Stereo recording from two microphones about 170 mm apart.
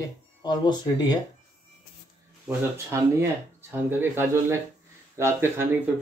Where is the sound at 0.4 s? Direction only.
25° left (ahead or behind).